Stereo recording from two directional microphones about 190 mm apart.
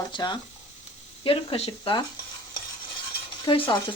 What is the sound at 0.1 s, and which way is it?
Speech, 25° left (ahead or behind).